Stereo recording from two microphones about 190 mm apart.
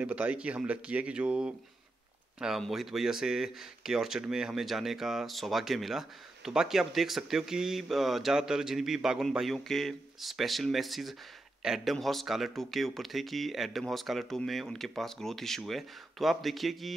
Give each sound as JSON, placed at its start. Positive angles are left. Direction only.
{"t": 0.0, "sound": "speech", "side_deg": -5}